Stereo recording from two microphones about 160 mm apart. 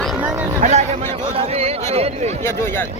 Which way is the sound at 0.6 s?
45° right (ahead or behind).